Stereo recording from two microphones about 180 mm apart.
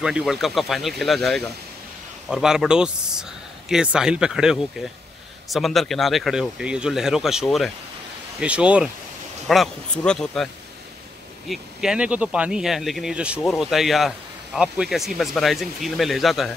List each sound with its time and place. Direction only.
0.0 s speech: 5° right (ahead or behind)